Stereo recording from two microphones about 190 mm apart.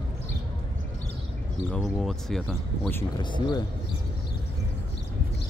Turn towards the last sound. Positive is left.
turn(degrees=25)  # may be behind; listen again after turning